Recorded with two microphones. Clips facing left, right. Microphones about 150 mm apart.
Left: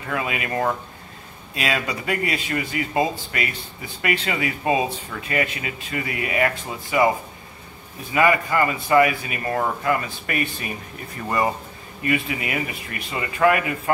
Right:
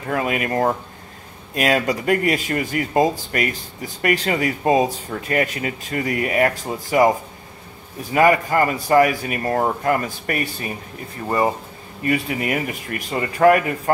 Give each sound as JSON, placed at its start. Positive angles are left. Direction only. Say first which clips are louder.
{"t": 0.1, "sound": "speech", "louder": "right 4 dB", "side_deg": -50}
{"t": 8.1, "sound": "speech", "louder": "right 3 dB", "side_deg": -45}
{"t": 11.2, "sound": "speech", "louder": "right 3 dB", "side_deg": -25}
{"t": 12.1, "sound": "speech", "louder": "right 3 dB", "side_deg": -45}